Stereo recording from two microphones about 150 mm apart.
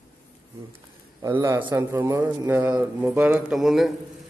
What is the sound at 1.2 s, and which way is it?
A man's voice, 20° right (ahead or behind).